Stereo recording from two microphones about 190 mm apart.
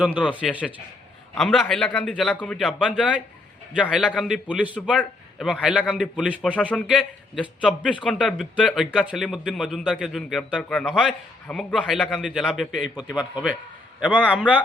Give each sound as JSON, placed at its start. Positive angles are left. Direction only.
{"t": 0.4, "sound": "a man's voice", "side_deg": 0}
{"t": 6.6, "sound": "a man's voice", "side_deg": 5}
{"t": 13.0, "sound": "a man's voice", "side_deg": 20}
{"t": 13.3, "sound": "a man's voice", "side_deg": -10}